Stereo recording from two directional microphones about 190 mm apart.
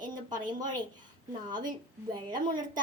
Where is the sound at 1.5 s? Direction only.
20° right (ahead or behind).